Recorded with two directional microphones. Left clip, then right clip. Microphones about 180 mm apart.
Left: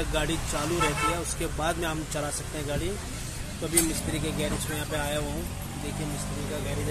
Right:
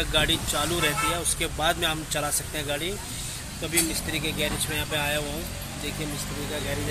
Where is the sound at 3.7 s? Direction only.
15° left (ahead or behind).